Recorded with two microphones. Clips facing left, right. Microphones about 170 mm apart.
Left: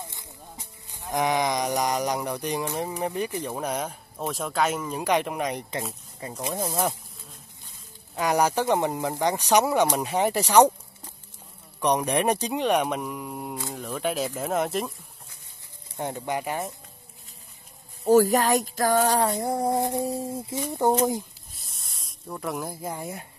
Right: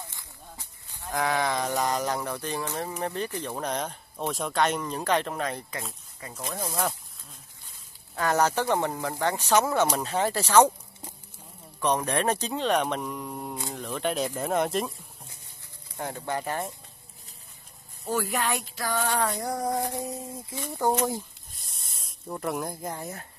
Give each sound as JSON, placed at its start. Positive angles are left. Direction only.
{"t": 0.0, "sound": "speech", "side_deg": 20}
{"t": 8.2, "sound": "speech", "side_deg": 15}
{"t": 11.8, "sound": "speech", "side_deg": 15}
{"t": 16.0, "sound": "speech", "side_deg": 20}
{"t": 18.0, "sound": "female singing", "side_deg": 40}
{"t": 20.6, "sound": "speech", "side_deg": 20}
{"t": 21.5, "sound": "snake", "side_deg": 0}